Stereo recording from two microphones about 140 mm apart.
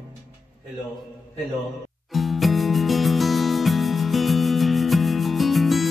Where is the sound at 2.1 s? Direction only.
Centre (ahead or behind).